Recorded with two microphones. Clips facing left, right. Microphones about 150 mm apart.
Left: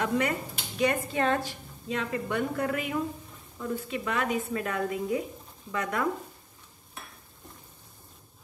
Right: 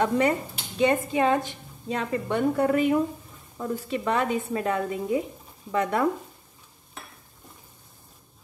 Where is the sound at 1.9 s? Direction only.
30° right (ahead or behind).